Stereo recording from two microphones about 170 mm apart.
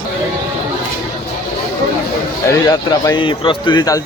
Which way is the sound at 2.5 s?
20° left (ahead or behind).